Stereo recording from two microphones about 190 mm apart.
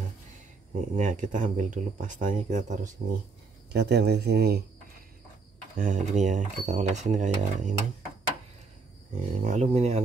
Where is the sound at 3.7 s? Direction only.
60° right (ahead or behind).